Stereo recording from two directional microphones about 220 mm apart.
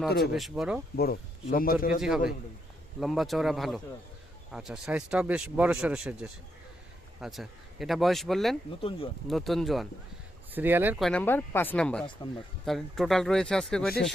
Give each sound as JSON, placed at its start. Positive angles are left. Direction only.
{"t": 0.2, "sound": "speech", "side_deg": 0}
{"t": 0.9, "sound": "a man's voice", "side_deg": 45}
{"t": 2.0, "sound": "speech", "side_deg": 0}
{"t": 8.8, "sound": "speech", "side_deg": 25}
{"t": 9.2, "sound": "speech", "side_deg": 0}